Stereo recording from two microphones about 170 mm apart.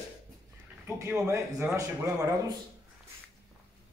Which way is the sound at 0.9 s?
15° right (ahead or behind).